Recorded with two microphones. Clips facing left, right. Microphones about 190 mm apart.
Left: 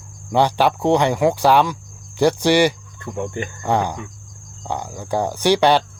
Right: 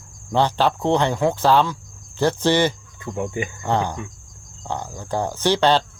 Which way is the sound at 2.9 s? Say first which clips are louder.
Even; 10° right (ahead or behind).